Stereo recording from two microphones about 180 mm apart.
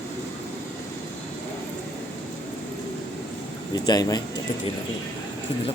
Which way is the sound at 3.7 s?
20° left (ahead or behind).